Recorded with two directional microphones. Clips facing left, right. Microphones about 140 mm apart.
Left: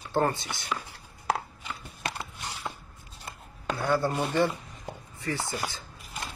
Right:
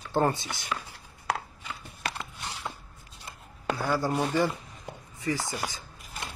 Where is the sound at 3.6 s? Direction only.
5° right (ahead or behind).